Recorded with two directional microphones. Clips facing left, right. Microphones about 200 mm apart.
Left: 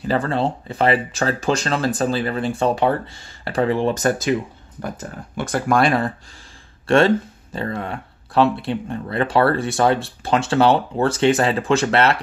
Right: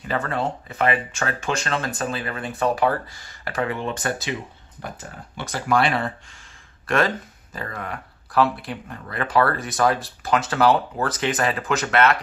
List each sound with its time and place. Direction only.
0.0 s speech: 30° left (ahead or behind)
6.9 s speech: 30° left (ahead or behind)